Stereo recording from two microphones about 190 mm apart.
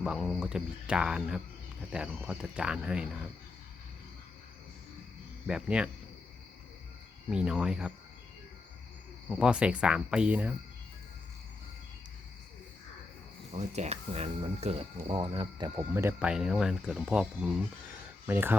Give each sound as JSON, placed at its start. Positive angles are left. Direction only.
{"t": 0.0, "sound": "speech", "side_deg": 0}
{"t": 5.5, "sound": "speech", "side_deg": -5}
{"t": 7.3, "sound": "speech", "side_deg": -5}
{"t": 9.3, "sound": "speech", "side_deg": -5}
{"t": 13.5, "sound": "speech", "side_deg": -35}
{"t": 16.0, "sound": "speech", "side_deg": -10}